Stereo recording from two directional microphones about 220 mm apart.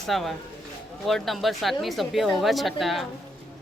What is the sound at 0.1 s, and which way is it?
Speech, centre (ahead or behind).